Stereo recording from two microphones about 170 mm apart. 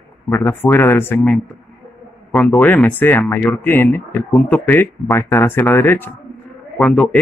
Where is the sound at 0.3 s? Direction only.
15° left (ahead or behind).